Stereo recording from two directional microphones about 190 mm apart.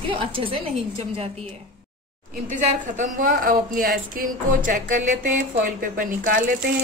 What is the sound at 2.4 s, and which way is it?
Speech, 40° right (ahead or behind).